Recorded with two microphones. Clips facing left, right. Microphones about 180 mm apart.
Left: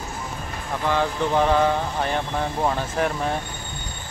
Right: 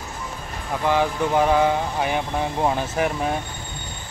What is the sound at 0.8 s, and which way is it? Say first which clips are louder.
Speech: right 2 dB; 10° right (ahead or behind).